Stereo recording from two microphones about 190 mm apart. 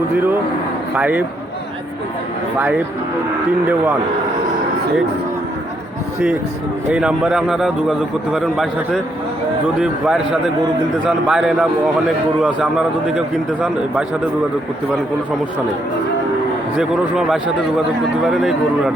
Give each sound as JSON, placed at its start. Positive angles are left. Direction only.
{"t": 0.1, "sound": "a man's voice", "side_deg": -10}
{"t": 2.6, "sound": "a man's voice", "side_deg": -10}
{"t": 6.9, "sound": "a man's voice", "side_deg": -5}
{"t": 16.7, "sound": "a man's voice", "side_deg": 0}